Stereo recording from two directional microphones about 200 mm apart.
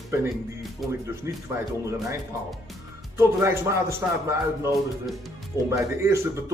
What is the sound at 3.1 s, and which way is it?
Speech, 15° right (ahead or behind).